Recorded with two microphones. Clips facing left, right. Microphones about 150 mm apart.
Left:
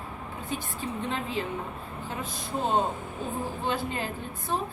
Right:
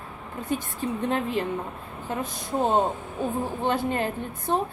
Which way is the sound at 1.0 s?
45° right (ahead or behind).